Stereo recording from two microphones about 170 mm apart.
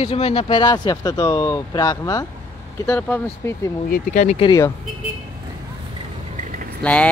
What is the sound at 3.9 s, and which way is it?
Speech, 45° left (ahead or behind).